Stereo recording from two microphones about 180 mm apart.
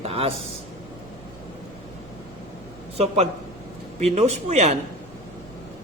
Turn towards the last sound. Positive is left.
turn(degrees=-40)  # may be behind; listen again after turning